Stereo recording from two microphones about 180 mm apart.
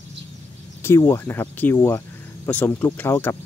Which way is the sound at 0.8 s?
15° left (ahead or behind).